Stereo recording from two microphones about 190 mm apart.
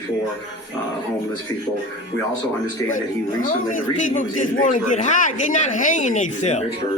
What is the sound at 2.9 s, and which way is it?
A man's voice, 45° left (ahead or behind).